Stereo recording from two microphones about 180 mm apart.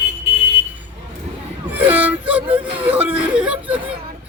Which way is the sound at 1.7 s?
10° right (ahead or behind).